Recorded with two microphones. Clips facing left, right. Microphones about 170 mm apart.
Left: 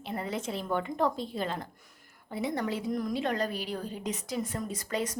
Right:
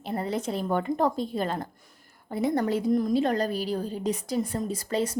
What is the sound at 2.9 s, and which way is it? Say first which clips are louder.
Speech: right 8 dB; 30° right (ahead or behind).